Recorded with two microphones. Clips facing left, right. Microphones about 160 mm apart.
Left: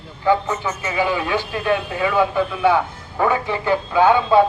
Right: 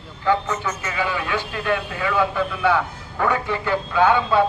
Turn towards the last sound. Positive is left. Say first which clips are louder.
# left 3 dB
turn(degrees=20)  # may be behind; listen again after turning